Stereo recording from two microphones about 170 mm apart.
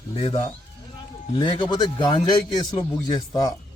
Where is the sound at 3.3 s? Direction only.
20° left (ahead or behind).